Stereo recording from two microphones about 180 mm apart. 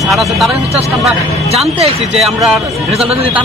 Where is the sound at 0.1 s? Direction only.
Centre (ahead or behind).